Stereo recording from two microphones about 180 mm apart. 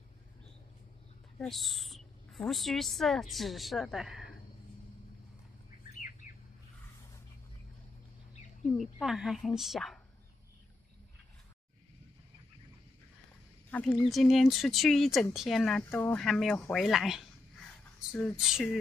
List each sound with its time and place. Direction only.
1.4 s speech: centre (ahead or behind)
6.2 s bird: 40° left (ahead or behind)
8.6 s speech: centre (ahead or behind)
13.7 s a sound: 5° left (ahead or behind)
14.0 s speech: centre (ahead or behind)